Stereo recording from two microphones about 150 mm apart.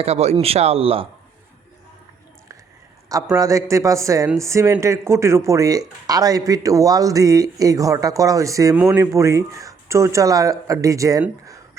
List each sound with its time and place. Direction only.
0.0 s speech: 45° right (ahead or behind)
3.1 s speech: 20° right (ahead or behind)
8.7 s speech: 10° right (ahead or behind)
11.4 s a sound: 20° right (ahead or behind)